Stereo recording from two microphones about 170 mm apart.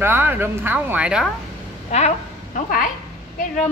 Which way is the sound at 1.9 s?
40° left (ahead or behind).